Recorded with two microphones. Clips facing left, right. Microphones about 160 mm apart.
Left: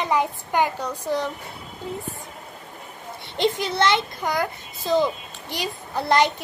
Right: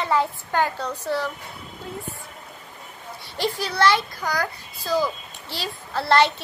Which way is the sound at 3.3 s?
20° left (ahead or behind).